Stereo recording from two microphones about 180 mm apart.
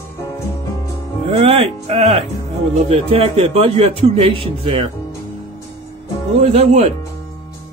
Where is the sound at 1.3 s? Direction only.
35° right (ahead or behind).